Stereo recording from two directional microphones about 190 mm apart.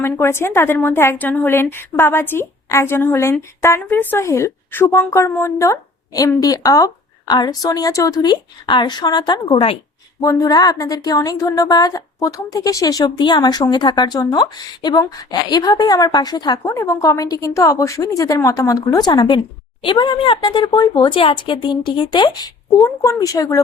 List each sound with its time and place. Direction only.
0.0 s a woman's voice: 10° left (ahead or behind)